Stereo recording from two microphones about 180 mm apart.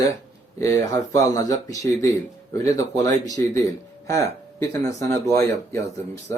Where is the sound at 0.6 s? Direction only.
20° left (ahead or behind).